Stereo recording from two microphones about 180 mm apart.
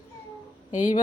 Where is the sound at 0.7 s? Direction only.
45° left (ahead or behind).